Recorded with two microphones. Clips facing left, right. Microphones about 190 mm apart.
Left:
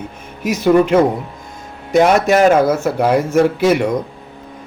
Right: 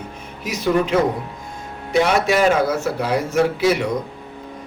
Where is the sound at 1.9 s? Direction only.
45° left (ahead or behind).